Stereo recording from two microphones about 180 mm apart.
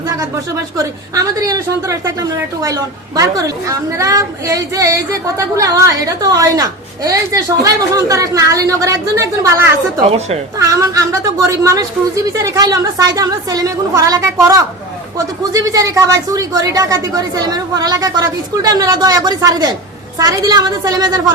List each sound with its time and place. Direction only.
1.1 s a woman's voice: 20° right (ahead or behind)
10.1 s speech: 35° right (ahead or behind)
10.6 s a woman's voice: 20° right (ahead or behind)